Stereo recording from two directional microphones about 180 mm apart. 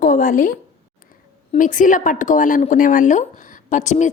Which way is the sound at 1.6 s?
45° left (ahead or behind).